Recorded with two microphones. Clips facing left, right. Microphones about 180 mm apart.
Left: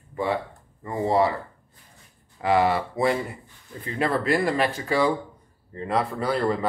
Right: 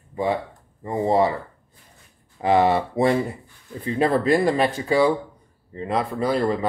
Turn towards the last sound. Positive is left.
turn(degrees=-15)  # may be behind; listen again after turning